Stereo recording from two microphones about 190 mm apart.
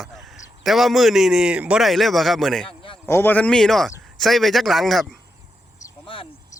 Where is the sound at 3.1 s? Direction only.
10° left (ahead or behind).